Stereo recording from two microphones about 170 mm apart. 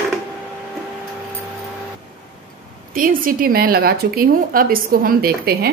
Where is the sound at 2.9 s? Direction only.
55° right (ahead or behind).